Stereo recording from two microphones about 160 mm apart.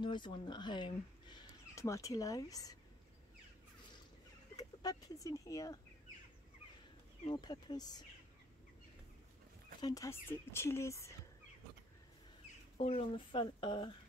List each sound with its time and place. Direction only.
0.0 s speech: 30° left (ahead or behind)
4.6 s speech: 25° left (ahead or behind)
7.3 s speech: 25° left (ahead or behind)
9.8 s speech: 25° left (ahead or behind)
12.7 s speech: 40° left (ahead or behind)